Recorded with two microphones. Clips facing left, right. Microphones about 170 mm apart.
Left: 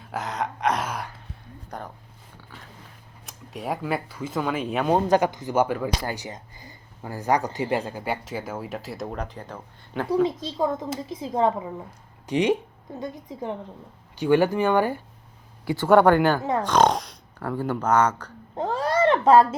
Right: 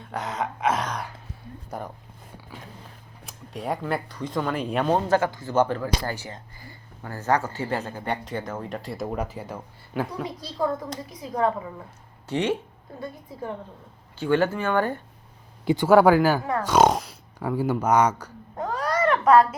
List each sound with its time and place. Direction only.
0.0 s speech: centre (ahead or behind)
3.2 s speech: centre (ahead or behind)
4.9 s speech: 15° left (ahead or behind); by 10.2 s 5° right (ahead or behind)
10.2 s a woman's voice: 20° left (ahead or behind)
15.6 s speech: 20° right (ahead or behind)
15.9 s speech: 5° right (ahead or behind)
16.4 s a woman's voice: 20° left (ahead or behind)
16.6 s speech: 10° right (ahead or behind)
18.5 s a sound: 25° left (ahead or behind)